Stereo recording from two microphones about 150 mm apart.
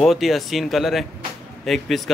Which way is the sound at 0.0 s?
Centre (ahead or behind).